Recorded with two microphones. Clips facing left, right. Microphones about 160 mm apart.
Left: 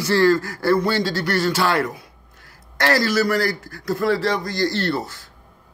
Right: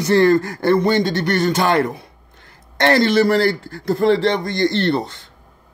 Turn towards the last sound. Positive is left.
turn(degrees=-20)  # may be behind; listen again after turning